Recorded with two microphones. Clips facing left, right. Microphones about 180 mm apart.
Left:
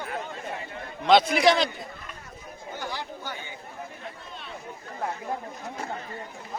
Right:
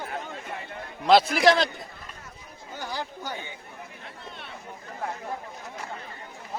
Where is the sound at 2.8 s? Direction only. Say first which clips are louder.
Right 2 dB; 40° right (ahead or behind).